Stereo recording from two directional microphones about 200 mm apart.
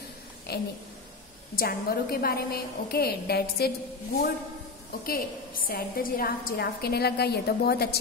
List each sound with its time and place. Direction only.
0.5 s a sound: 50° left (ahead or behind)
1.5 s a woman's voice: 50° left (ahead or behind)
5.0 s a woman's voice: 45° left (ahead or behind)